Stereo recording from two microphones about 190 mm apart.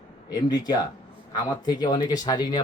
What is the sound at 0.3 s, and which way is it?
Speech, 20° left (ahead or behind).